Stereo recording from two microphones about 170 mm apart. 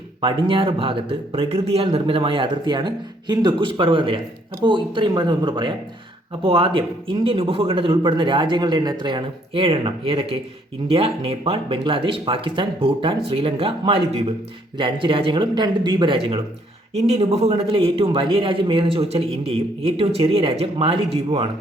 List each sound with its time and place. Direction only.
0.2 s a man's voice: 30° right (ahead or behind)